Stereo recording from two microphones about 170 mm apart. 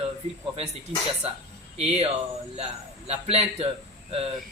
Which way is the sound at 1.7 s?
40° right (ahead or behind).